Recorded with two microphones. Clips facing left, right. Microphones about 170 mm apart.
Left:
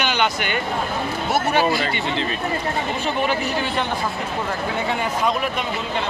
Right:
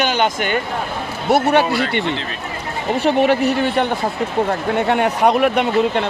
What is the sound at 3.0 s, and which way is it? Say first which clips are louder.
Speech: right 10 dB; 65° right (ahead or behind).